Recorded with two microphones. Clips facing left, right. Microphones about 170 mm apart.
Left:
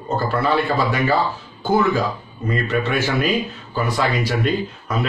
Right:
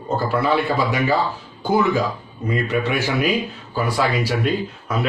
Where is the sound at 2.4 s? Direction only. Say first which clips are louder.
Even; 15° right (ahead or behind).